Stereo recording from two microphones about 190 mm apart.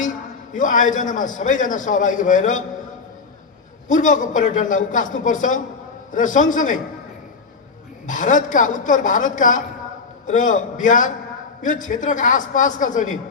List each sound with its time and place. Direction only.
0.5 s a man's voice: 40° left (ahead or behind)
3.8 s a man's voice: 40° left (ahead or behind)
8.0 s a man's voice: 45° left (ahead or behind)